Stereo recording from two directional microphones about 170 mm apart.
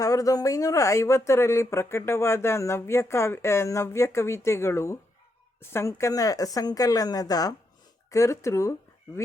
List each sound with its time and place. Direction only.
0.0 s a woman's voice: 20° left (ahead or behind)